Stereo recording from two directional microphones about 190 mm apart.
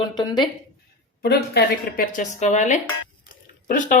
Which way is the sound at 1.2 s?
55° left (ahead or behind).